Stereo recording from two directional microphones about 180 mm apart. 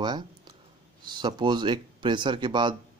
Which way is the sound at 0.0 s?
25° right (ahead or behind).